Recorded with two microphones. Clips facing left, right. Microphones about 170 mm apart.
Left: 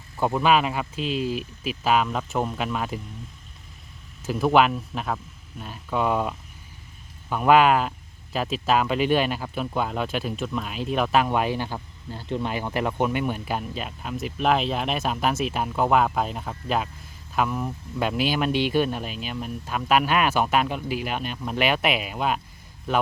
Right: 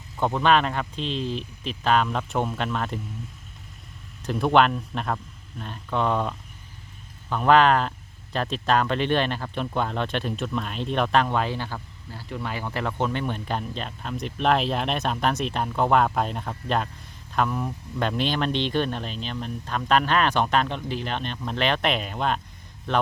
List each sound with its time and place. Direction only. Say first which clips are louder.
0.2 s speech: even; 5° left (ahead or behind)
4.2 s speech: even; 5° left (ahead or behind)